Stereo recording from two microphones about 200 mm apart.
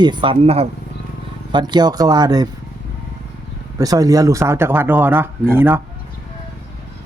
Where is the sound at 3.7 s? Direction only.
20° right (ahead or behind).